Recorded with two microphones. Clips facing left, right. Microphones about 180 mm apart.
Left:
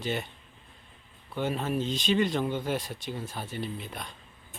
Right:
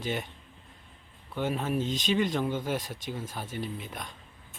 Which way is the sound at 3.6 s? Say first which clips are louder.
Even; 10° right (ahead or behind).